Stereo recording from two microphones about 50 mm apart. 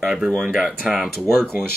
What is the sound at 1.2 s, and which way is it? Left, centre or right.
Speech, centre.